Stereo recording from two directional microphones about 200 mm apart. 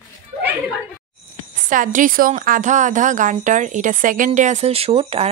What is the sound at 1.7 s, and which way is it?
A woman's voice, 40° right (ahead or behind).